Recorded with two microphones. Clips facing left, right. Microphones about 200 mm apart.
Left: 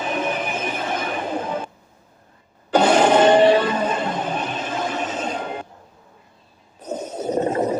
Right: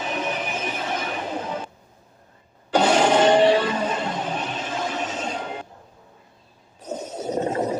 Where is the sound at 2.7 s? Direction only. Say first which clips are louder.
Left 3 dB; 55° left (ahead or behind).